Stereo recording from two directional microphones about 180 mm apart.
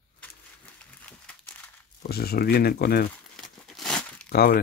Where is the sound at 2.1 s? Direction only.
60° left (ahead or behind).